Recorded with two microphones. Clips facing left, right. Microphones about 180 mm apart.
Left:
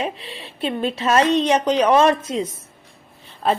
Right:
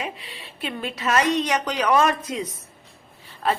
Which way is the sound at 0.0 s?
25° left (ahead or behind).